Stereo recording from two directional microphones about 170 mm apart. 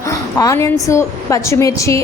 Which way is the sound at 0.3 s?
20° left (ahead or behind).